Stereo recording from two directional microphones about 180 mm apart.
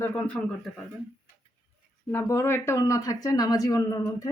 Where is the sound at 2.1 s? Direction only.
15° left (ahead or behind).